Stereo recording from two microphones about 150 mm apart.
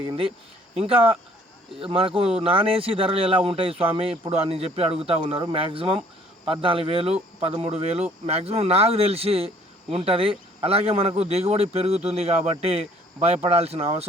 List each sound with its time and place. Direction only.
0.8 s a man's voice: 40° right (ahead or behind)